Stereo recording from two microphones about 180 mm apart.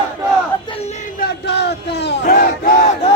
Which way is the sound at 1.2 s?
70° left (ahead or behind).